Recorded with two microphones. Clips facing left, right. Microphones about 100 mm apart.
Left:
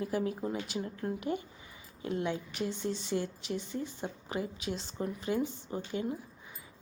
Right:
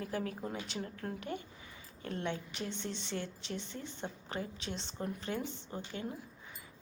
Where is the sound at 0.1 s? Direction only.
20° left (ahead or behind).